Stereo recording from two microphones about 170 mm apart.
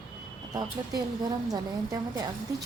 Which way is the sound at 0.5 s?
25° right (ahead or behind).